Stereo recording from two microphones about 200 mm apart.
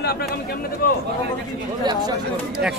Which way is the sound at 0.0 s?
50° left (ahead or behind).